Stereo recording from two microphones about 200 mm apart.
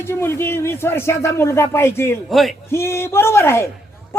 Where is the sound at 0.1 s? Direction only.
10° left (ahead or behind).